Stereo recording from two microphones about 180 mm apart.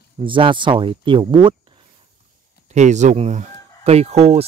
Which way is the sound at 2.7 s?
40° right (ahead or behind).